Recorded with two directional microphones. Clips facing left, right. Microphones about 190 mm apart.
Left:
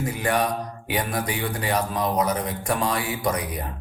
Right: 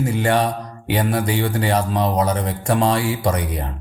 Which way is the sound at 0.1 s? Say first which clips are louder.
Right 3 dB; 30° right (ahead or behind).